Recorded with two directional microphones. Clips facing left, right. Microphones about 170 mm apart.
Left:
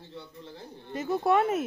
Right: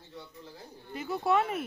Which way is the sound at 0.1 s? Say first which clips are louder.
Left 2 dB; 25° left (ahead or behind).